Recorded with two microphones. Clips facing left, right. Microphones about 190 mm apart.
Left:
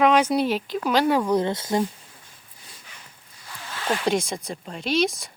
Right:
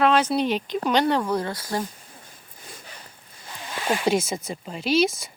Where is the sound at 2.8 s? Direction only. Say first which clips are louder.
Right 5 dB; 35° right (ahead or behind).